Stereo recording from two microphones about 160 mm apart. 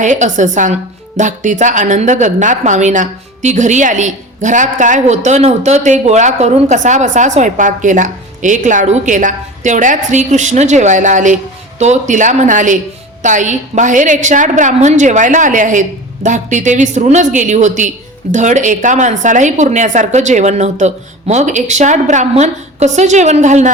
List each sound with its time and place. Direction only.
0.0 s a woman's voice: 50° right (ahead or behind)